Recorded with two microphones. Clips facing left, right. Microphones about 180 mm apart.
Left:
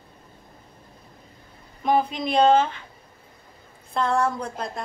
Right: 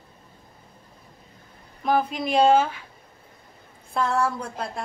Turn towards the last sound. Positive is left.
turn(degrees=-5)  # may be behind; listen again after turning